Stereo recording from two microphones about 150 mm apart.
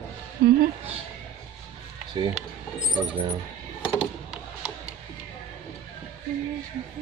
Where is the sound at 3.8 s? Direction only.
5° right (ahead or behind).